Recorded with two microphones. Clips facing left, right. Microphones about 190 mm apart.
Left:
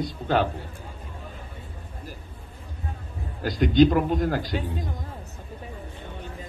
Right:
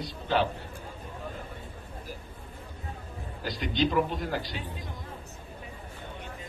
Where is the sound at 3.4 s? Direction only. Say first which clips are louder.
Left 10 dB; 50° left (ahead or behind).